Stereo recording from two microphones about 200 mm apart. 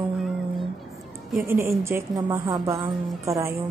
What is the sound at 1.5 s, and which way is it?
A woman's voice, 10° right (ahead or behind).